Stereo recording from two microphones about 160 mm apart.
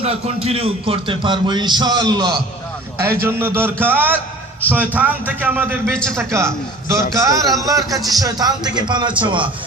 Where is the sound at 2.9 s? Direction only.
15° right (ahead or behind).